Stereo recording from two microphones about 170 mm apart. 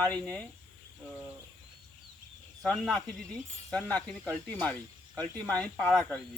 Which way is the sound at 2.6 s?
Centre (ahead or behind).